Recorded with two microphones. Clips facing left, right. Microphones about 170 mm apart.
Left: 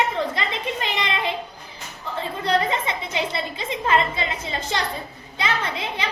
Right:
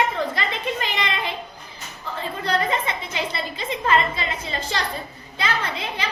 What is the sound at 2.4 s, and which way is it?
A woman's voice, 20° left (ahead or behind).